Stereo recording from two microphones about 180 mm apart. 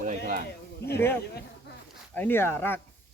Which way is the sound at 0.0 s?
50° right (ahead or behind).